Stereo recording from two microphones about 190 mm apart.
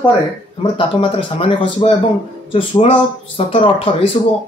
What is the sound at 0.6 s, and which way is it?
Speech, 25° left (ahead or behind).